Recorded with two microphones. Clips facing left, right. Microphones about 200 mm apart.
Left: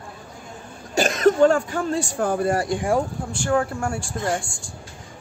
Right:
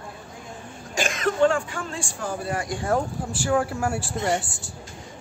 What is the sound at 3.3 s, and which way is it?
Speech, 5° right (ahead or behind).